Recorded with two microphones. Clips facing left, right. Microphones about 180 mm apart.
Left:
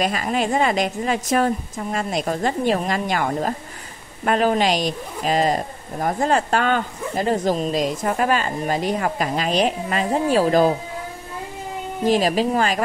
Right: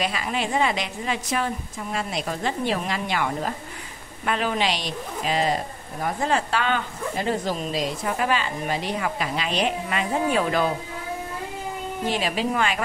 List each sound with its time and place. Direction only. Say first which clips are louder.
0.0 s speech: left 5 dB; 45° left (ahead or behind)
12.1 s speech: left 7 dB; 40° left (ahead or behind)